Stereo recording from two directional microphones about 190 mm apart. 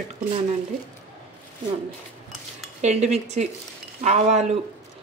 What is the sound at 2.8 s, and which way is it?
Speech, 35° right (ahead or behind).